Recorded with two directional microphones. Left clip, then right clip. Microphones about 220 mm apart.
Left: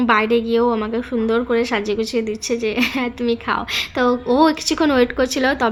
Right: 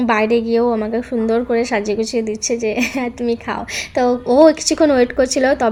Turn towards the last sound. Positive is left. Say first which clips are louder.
# right 3 dB
turn(degrees=5)  # may be behind; listen again after turning